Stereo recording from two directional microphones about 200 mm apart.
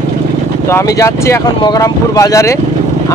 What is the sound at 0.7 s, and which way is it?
Speech, 15° left (ahead or behind).